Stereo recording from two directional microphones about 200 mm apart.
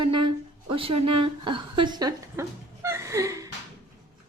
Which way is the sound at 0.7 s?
25° right (ahead or behind).